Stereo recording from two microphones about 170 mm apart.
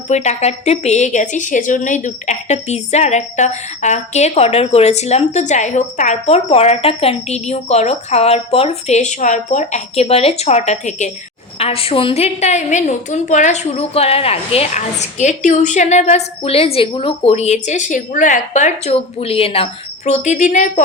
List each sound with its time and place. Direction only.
0.1 s a woman's voice: 40° left (ahead or behind)